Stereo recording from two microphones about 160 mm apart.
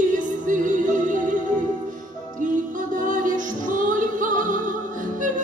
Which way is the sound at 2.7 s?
55° right (ahead or behind).